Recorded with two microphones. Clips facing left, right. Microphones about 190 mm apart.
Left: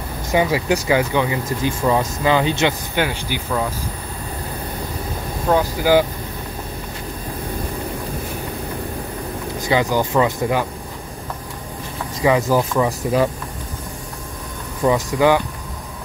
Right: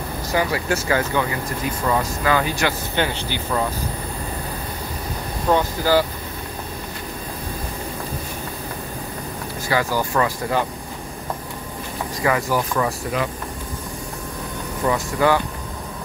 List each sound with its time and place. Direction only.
0.3 s speech: 20° left (ahead or behind)
3.0 s speech: 10° left (ahead or behind)
5.5 s speech: 10° left (ahead or behind)
9.7 s speech: 20° left (ahead or behind)
12.2 s speech: 20° left (ahead or behind)
14.9 s speech: 15° left (ahead or behind)